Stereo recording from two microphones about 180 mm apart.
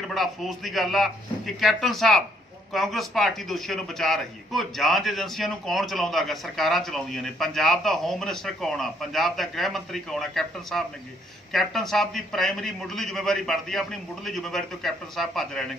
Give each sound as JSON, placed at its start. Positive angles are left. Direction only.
{"t": 0.1, "sound": "a man's voice", "side_deg": 0}